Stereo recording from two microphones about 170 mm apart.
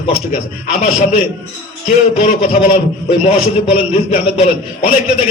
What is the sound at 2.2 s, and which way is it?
A man's voice, 45° left (ahead or behind).